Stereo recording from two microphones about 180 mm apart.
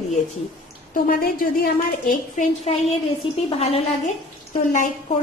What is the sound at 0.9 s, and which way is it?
A woman's voice, 55° left (ahead or behind).